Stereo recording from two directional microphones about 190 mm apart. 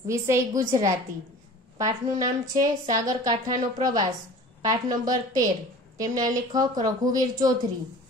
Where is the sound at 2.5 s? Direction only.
20° right (ahead or behind).